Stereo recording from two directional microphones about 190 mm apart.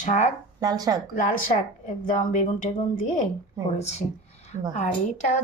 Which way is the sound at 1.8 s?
40° left (ahead or behind).